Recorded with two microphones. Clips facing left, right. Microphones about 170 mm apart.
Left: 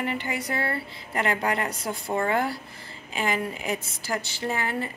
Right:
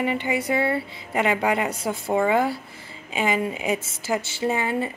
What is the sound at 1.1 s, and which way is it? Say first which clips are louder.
Speech: right 4 dB; 10° right (ahead or behind).